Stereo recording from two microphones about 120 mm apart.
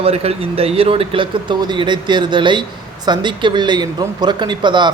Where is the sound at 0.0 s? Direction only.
55° right (ahead or behind).